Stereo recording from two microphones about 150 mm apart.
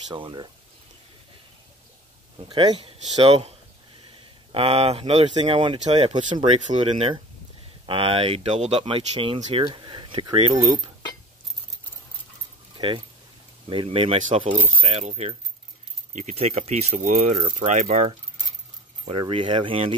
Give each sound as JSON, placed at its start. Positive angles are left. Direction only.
{"t": 0.1, "sound": "speech", "side_deg": -30}
{"t": 2.3, "sound": "speech", "side_deg": -30}
{"t": 12.7, "sound": "a sound", "side_deg": -35}
{"t": 13.7, "sound": "speech", "side_deg": -35}
{"t": 19.0, "sound": "speech", "side_deg": -35}